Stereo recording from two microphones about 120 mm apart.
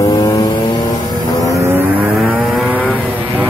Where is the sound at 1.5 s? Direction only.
20° right (ahead or behind).